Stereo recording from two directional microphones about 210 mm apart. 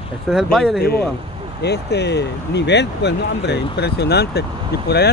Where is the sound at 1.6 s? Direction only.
55° left (ahead or behind).